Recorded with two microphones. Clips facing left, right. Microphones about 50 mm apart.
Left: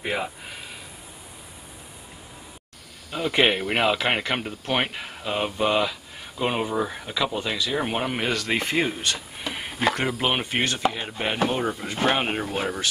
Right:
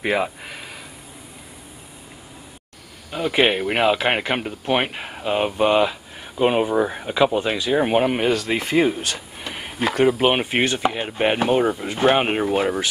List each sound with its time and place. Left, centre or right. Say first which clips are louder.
0.0 s speech: right 6 dB; right
3.1 s speech: right 2 dB; centre
11.7 s speech: right 6 dB; centre